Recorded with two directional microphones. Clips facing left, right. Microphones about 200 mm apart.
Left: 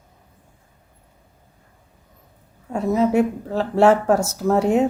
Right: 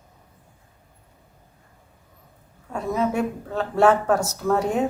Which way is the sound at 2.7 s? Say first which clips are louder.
Left 5 dB; 25° left (ahead or behind).